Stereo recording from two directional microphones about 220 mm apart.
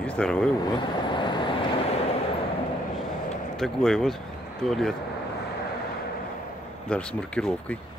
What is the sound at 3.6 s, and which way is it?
Speech, centre (ahead or behind).